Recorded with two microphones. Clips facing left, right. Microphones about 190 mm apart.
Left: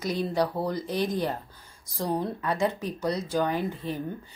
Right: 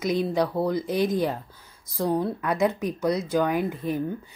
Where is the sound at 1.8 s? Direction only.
15° left (ahead or behind).